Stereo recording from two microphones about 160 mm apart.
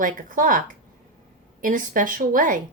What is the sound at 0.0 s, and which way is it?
Speech, 60° right (ahead or behind).